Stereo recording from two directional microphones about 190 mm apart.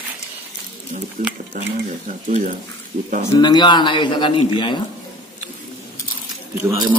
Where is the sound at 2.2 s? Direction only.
40° right (ahead or behind).